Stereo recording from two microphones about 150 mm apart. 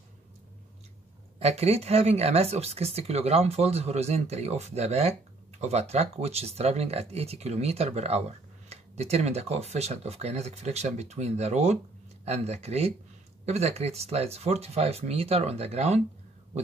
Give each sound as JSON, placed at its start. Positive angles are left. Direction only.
{"t": 1.4, "sound": "speech", "side_deg": -45}